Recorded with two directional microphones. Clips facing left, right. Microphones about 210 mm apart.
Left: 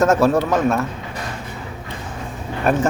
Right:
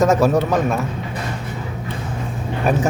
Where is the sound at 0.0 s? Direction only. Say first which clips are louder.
Even; 15° right (ahead or behind).